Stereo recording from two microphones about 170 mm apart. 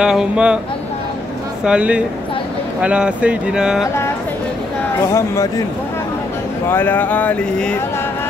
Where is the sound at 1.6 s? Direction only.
5° right (ahead or behind).